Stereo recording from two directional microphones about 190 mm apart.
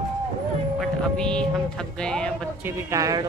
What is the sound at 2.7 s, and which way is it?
Speech, 15° right (ahead or behind).